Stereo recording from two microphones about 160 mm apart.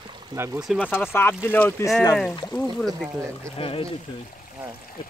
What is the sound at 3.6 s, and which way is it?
Speech, 35° left (ahead or behind).